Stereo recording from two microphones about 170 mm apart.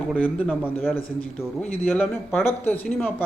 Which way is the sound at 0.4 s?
10° left (ahead or behind).